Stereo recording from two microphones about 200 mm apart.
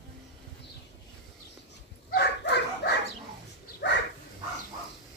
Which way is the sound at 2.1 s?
55° left (ahead or behind).